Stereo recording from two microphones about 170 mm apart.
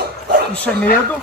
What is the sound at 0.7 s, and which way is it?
Speech, 5° left (ahead or behind).